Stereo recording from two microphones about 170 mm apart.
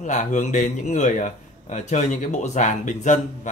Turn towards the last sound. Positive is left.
turn(degrees=45)  # may be behind; listen again after turning